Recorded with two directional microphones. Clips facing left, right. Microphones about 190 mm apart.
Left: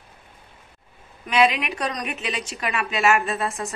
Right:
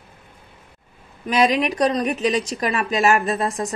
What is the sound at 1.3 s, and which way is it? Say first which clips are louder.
A woman's voice: right 2 dB; 40° right (ahead or behind).